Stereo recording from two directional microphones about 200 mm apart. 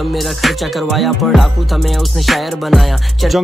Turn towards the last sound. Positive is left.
turn(degrees=0)  # may be behind; listen again after turning